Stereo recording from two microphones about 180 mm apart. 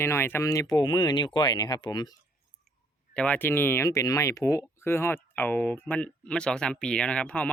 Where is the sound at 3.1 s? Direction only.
5° left (ahead or behind).